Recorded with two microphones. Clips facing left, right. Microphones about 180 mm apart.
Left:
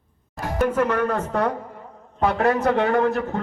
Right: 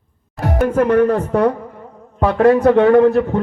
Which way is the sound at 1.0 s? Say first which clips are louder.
Right 9 dB; 35° right (ahead or behind).